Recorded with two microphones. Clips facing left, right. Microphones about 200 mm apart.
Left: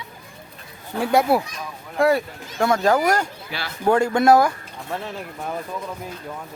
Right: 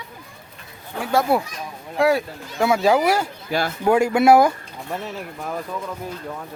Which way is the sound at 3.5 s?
45° right (ahead or behind).